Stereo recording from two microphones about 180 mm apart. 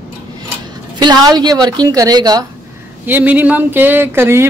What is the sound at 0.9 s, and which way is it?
Speech, 25° right (ahead or behind).